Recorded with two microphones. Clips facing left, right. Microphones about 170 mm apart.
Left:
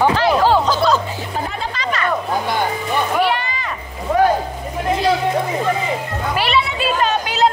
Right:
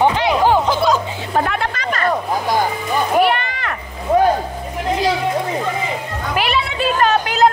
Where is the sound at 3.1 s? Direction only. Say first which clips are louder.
Right 3 dB; 55° right (ahead or behind).